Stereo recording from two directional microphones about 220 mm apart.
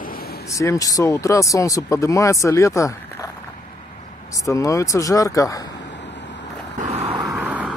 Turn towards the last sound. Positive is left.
turn(degrees=-5)  # may be behind; listen again after turning